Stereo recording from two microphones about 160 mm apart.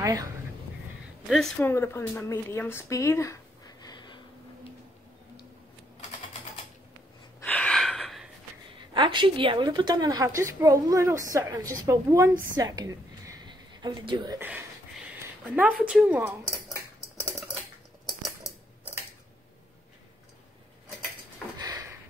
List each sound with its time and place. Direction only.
0.0 s speech: 20° right (ahead or behind)
1.2 s speech: centre (ahead or behind)
1.6 s speech: 15° left (ahead or behind)
7.4 s gasp: 10° left (ahead or behind)
8.7 s a woman's voice: 30° right (ahead or behind)
12.5 s a sound: 25° right (ahead or behind)
15.8 s a woman's voice: 5° right (ahead or behind)
21.5 s a sound: 20° right (ahead or behind)